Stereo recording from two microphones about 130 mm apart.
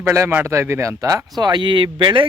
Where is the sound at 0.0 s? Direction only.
20° right (ahead or behind).